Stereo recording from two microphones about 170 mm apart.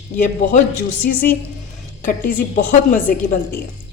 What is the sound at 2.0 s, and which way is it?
A woman's voice, 50° left (ahead or behind).